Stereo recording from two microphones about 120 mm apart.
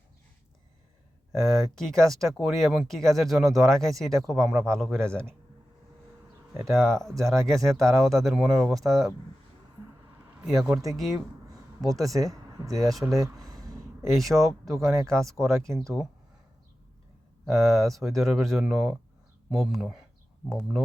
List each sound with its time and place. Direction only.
1.4 s speech: centre (ahead or behind)
6.7 s speech: 5° left (ahead or behind)
10.4 s speech: centre (ahead or behind)
12.0 s speech: 25° right (ahead or behind)
13.2 s a sound: 30° right (ahead or behind)
14.1 s speech: centre (ahead or behind)
17.4 s speech: centre (ahead or behind)